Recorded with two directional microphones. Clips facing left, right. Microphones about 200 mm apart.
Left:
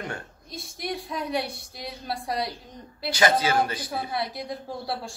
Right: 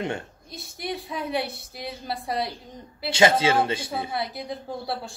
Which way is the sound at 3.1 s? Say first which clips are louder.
Right 3 dB; 25° right (ahead or behind).